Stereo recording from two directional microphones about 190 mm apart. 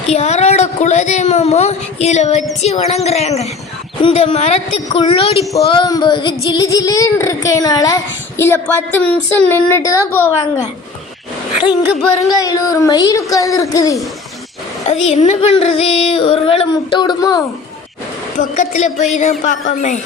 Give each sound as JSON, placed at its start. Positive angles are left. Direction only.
{"t": 0.1, "sound": "a woman's voice", "side_deg": 35}
{"t": 5.6, "sound": "child singing", "side_deg": 25}
{"t": 11.9, "sound": "a sound", "side_deg": 0}
{"t": 12.4, "sound": "child singing", "side_deg": 20}
{"t": 14.8, "sound": "a woman's voice", "side_deg": 35}
{"t": 18.3, "sound": "a woman's voice", "side_deg": 40}